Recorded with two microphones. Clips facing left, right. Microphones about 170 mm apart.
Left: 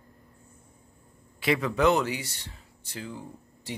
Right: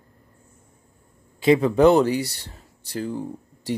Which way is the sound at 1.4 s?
30° right (ahead or behind).